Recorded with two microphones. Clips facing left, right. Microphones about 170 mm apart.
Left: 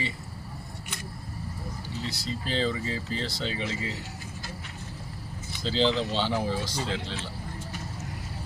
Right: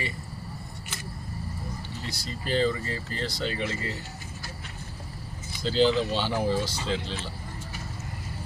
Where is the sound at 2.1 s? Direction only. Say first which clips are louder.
Right 2 dB; 5° right (ahead or behind).